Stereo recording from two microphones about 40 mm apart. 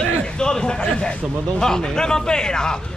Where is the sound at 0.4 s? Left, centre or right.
Centre.